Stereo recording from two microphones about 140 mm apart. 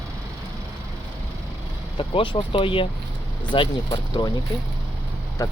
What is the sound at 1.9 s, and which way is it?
Speech, 35° left (ahead or behind).